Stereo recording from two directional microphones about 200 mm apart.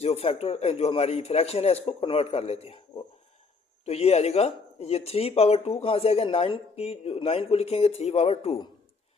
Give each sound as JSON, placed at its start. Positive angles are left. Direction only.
{"t": 0.0, "sound": "a man's voice", "side_deg": 30}
{"t": 3.8, "sound": "speech", "side_deg": 30}